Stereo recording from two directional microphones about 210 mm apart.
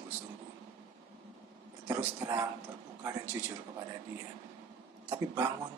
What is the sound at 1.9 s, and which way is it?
A woman's voice, 10° right (ahead or behind).